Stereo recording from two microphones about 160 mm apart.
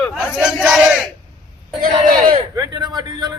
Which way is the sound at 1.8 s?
60° right (ahead or behind).